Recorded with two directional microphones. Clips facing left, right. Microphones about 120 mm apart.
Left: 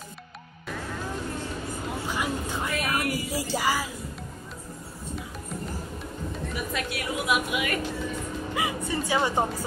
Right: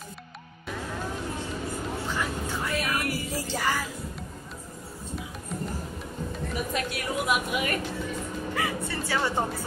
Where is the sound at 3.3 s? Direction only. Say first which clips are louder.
Left 2 dB; 10° left (ahead or behind).